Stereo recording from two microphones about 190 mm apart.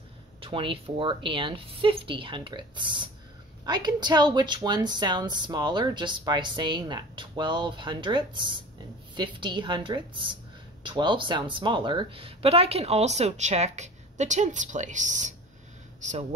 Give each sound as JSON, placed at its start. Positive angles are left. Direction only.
{"t": 0.4, "sound": "speech", "side_deg": -25}